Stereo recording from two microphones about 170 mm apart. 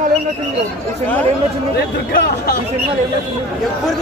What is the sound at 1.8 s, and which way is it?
Speech, 70° left (ahead or behind).